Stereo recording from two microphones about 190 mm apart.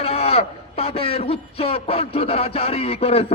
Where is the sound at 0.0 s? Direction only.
30° left (ahead or behind).